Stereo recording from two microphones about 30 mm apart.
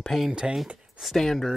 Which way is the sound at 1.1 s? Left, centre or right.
Centre.